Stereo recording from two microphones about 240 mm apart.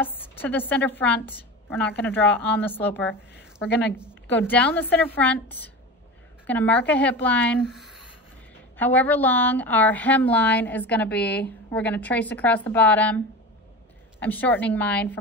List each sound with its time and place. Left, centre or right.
0.0 s a woman's voice: centre
3.6 s a woman's voice: left
4.1 s a woman's voice: centre
14.2 s a woman's voice: centre